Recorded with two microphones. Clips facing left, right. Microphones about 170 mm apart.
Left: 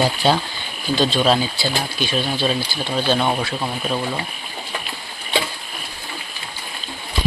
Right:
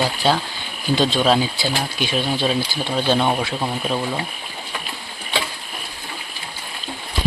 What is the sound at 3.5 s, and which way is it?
Speech, 15° right (ahead or behind).